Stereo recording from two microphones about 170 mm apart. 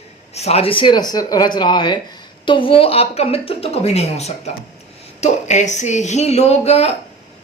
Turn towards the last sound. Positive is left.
turn(degrees=35)  # may be behind; listen again after turning